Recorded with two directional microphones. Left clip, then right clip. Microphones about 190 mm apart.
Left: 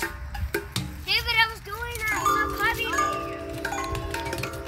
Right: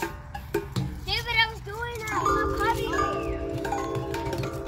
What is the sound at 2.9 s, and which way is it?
Music, 20° left (ahead or behind).